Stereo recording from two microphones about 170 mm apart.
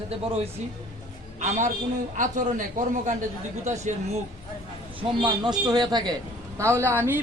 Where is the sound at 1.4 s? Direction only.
45° right (ahead or behind).